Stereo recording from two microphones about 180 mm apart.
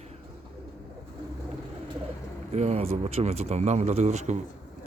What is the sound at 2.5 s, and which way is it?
Speech, 35° right (ahead or behind).